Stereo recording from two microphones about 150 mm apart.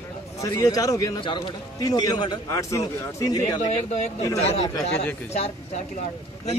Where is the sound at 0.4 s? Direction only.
25° left (ahead or behind).